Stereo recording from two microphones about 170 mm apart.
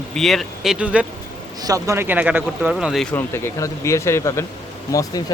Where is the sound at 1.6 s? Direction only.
20° right (ahead or behind); by 3.1 s centre (ahead or behind).